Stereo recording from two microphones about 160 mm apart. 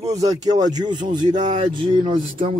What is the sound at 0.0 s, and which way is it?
Speech, 20° right (ahead or behind).